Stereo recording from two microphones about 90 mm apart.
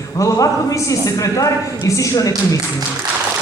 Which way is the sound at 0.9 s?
40° left (ahead or behind).